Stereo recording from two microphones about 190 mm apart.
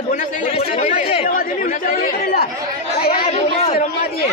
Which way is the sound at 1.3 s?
45° left (ahead or behind).